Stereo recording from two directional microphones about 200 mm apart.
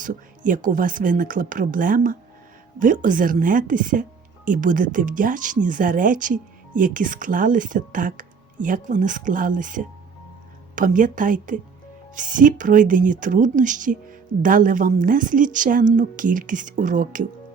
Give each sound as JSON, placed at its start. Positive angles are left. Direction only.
{"t": 0.0, "sound": "speech", "side_deg": -40}